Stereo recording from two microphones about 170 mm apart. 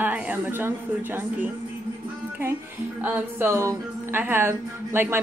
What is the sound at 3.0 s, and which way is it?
Speech, 10° right (ahead or behind).